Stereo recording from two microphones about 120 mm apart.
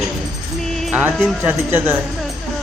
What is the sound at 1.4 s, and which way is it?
Speech, 15° right (ahead or behind).